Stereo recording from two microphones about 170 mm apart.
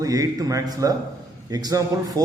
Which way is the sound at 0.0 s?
20° right (ahead or behind).